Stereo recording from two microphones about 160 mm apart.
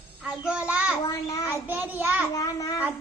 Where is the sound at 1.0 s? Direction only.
20° left (ahead or behind).